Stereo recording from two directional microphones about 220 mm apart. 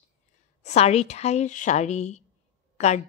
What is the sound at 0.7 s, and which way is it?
A woman's voice, 30° left (ahead or behind).